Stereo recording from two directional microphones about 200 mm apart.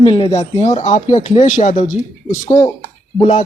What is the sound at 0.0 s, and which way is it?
Speech, 25° left (ahead or behind).